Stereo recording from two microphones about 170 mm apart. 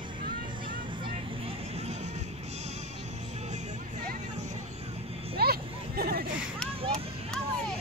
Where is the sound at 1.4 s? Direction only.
40° right (ahead or behind).